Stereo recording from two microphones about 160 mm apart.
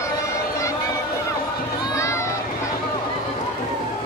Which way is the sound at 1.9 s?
20° left (ahead or behind).